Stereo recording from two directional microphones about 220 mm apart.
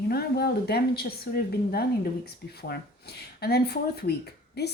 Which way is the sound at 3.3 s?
45° left (ahead or behind).